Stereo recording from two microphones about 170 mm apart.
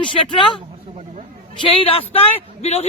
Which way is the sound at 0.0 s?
30° left (ahead or behind).